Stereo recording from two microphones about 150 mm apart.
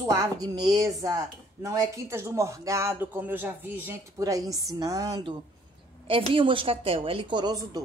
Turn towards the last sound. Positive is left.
turn(degrees=-25)  # may be behind; listen again after turning